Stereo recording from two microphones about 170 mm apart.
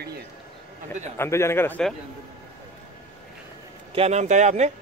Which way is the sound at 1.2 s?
15° left (ahead or behind).